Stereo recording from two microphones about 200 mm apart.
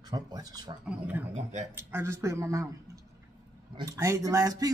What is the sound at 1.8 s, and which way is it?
Speech, 10° right (ahead or behind).